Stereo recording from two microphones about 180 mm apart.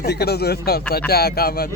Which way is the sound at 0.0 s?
65° left (ahead or behind).